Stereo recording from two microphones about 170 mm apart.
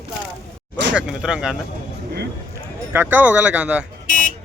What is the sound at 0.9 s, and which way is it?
Speech, 5° right (ahead or behind).